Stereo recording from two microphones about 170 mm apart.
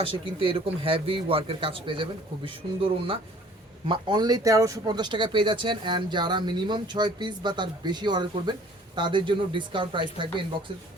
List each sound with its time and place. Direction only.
0.0 s a man's voice: 30° right (ahead or behind)